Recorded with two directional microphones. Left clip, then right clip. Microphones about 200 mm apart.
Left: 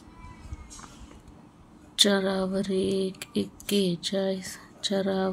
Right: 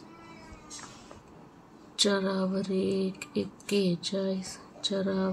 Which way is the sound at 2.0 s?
40° left (ahead or behind).